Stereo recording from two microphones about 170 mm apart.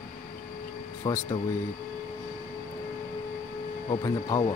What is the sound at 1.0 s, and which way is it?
Speech, 25° left (ahead or behind).